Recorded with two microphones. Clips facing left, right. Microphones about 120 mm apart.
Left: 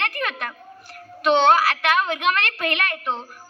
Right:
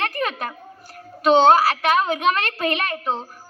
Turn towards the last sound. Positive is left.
turn(degrees=-35)  # may be behind; listen again after turning